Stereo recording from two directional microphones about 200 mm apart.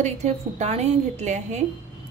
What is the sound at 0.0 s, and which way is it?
A woman's voice, 35° right (ahead or behind).